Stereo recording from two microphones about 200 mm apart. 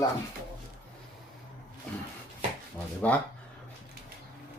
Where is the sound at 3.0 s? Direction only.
10° left (ahead or behind).